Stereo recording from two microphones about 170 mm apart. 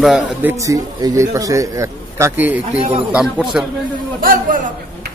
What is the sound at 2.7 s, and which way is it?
Speech, 40° right (ahead or behind).